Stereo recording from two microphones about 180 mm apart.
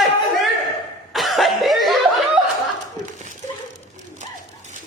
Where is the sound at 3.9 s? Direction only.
40° right (ahead or behind).